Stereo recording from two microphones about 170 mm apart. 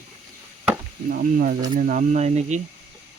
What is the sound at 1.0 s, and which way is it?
Speech, 55° right (ahead or behind).